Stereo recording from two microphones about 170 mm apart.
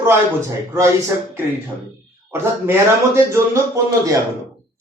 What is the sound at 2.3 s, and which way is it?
Speech, 15° right (ahead or behind).